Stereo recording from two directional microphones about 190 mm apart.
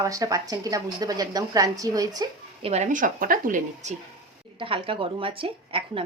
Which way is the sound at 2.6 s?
35° right (ahead or behind).